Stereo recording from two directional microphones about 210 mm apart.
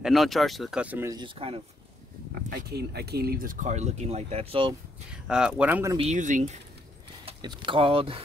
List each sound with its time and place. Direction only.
0.0 s speech: centre (ahead or behind); by 1.6 s 25° right (ahead or behind)
2.5 s speech: 50° right (ahead or behind); by 4.7 s 25° right (ahead or behind)
5.1 s speech: 5° right (ahead or behind)
5.9 s speech: 35° right (ahead or behind)
7.2 s speech: 20° right (ahead or behind)